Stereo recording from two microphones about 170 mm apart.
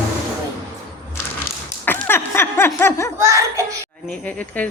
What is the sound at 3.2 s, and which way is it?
Speech, 15° right (ahead or behind).